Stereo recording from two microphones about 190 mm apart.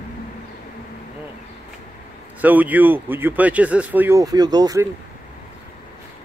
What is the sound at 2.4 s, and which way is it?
Speech, 10° right (ahead or behind).